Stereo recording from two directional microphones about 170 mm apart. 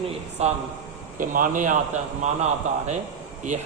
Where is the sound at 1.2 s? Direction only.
50° right (ahead or behind).